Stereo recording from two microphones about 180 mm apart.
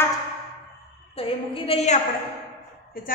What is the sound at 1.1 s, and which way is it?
Speech, 30° left (ahead or behind).